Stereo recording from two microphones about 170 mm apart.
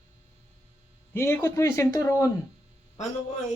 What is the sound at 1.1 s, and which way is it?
Speech, 15° left (ahead or behind).